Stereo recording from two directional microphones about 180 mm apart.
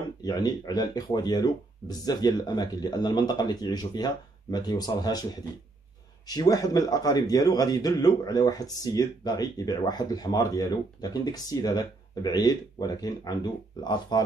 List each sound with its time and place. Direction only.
0.2 s a man's voice: 20° left (ahead or behind)